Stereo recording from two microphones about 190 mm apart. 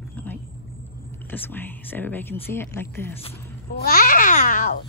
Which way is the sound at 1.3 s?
10° left (ahead or behind).